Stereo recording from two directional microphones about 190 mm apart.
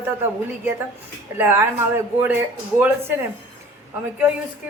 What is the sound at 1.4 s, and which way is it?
Speech, 10° right (ahead or behind).